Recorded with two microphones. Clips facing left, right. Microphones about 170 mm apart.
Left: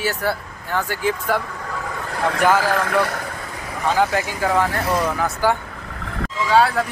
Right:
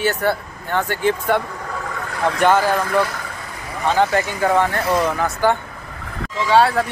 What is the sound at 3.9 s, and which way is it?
Speech, 5° left (ahead or behind).